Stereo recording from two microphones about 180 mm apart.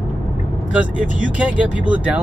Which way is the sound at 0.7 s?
5° right (ahead or behind).